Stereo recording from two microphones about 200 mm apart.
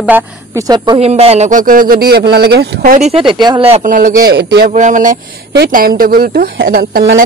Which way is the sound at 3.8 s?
40° right (ahead or behind).